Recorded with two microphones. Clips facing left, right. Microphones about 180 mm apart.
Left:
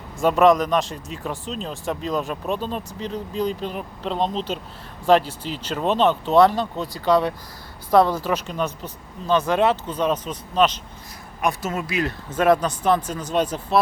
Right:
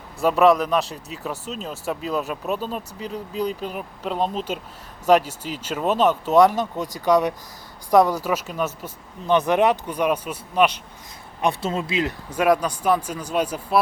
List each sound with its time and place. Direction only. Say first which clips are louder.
0.2 s speech: left 1 dB; centre (ahead or behind)
9.2 s speech: right 1 dB; 20° right (ahead or behind)
11.3 s speech: right 1 dB; 30° right (ahead or behind)
12.3 s speech: left 2 dB; 10° right (ahead or behind)